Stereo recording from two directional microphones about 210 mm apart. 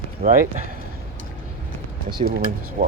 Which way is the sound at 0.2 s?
40° right (ahead or behind).